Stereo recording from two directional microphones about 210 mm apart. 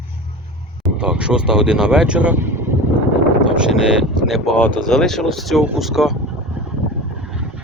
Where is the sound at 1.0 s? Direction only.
5° right (ahead or behind).